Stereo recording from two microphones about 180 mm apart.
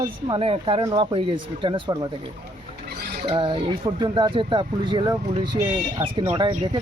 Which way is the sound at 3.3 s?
30° right (ahead or behind).